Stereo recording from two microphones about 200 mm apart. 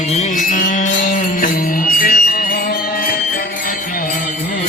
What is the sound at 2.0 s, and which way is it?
Music, 45° left (ahead or behind).